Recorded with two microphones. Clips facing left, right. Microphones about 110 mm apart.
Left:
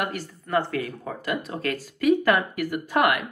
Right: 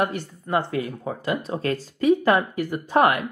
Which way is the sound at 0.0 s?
25° right (ahead or behind).